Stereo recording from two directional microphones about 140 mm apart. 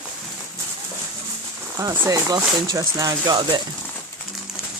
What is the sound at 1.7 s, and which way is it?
Speech, 25° right (ahead or behind).